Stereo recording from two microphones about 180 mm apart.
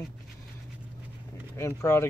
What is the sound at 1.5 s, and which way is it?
Speech, 15° left (ahead or behind).